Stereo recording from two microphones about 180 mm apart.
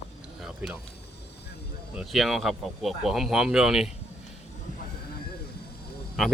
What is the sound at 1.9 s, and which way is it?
Speech, centre (ahead or behind).